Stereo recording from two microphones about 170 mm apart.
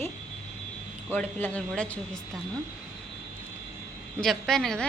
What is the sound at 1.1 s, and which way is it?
Speech, 10° left (ahead or behind).